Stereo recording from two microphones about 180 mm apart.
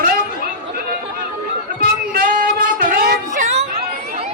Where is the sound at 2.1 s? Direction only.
50° right (ahead or behind).